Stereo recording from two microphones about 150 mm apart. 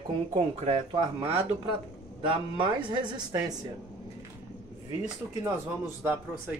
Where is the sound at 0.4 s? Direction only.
40° right (ahead or behind); by 3.5 s 25° right (ahead or behind).